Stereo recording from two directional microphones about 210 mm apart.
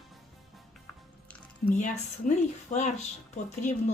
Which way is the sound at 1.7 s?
35° left (ahead or behind).